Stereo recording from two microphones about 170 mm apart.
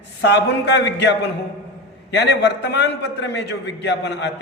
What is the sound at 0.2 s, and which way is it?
A man's voice, 85° left.